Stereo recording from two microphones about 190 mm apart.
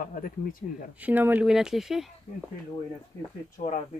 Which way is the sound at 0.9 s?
10° right (ahead or behind).